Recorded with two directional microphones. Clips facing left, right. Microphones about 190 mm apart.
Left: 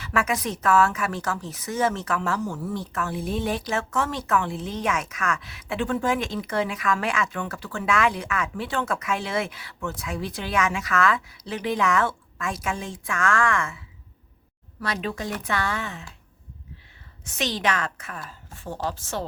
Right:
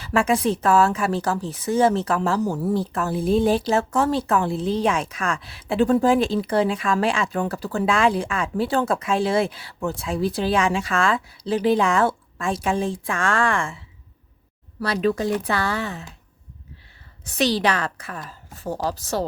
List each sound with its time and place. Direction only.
0.0 s speech: 30° right (ahead or behind)
17.2 s speech: 35° right (ahead or behind)